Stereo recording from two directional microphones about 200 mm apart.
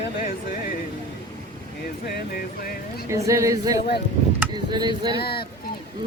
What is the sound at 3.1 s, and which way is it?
Speech, 15° right (ahead or behind).